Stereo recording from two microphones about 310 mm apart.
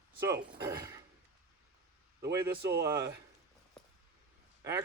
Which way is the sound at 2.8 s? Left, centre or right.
Centre.